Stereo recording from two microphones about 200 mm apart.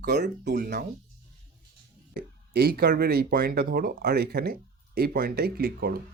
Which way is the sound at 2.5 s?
50° right (ahead or behind).